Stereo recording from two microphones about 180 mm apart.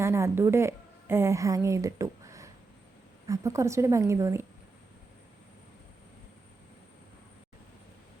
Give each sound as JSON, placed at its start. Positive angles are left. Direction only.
{"t": 0.0, "sound": "a woman's voice", "side_deg": -15}